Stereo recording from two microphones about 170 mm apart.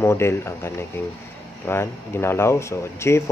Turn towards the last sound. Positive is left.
turn(degrees=15)  # may be behind; listen again after turning